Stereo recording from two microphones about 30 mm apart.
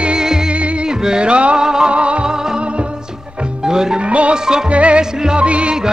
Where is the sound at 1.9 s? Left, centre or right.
Right.